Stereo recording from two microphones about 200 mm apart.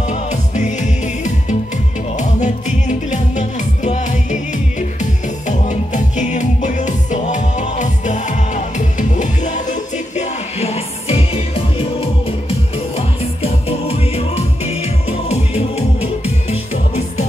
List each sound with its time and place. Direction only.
0.0 s music: 35° left (ahead or behind)